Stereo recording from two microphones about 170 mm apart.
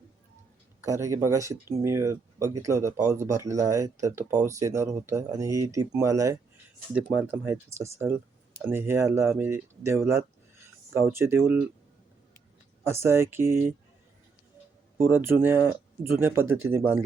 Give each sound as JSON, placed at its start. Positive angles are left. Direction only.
{"t": 0.8, "sound": "speech", "side_deg": -15}
{"t": 12.8, "sound": "speech", "side_deg": -15}
{"t": 14.9, "sound": "speech", "side_deg": -15}